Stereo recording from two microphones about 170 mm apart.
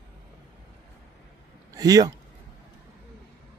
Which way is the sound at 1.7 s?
20° right (ahead or behind).